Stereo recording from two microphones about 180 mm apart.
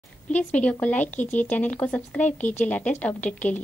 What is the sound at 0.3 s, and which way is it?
A woman's voice, 10° left (ahead or behind).